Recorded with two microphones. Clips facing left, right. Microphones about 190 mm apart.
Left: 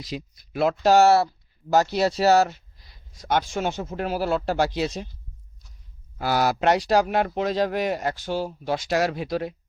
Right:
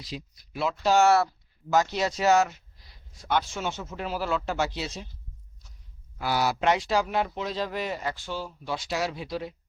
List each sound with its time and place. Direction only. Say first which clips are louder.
0.1 s speech: left 5 dB; 50° left (ahead or behind); by 2.6 s 35° left (ahead or behind)
3.2 s speech: left 4 dB; 45° left (ahead or behind)
6.1 s speech: left 4 dB; 45° left (ahead or behind)
7.0 s speech: left 5 dB; 60° left (ahead or behind)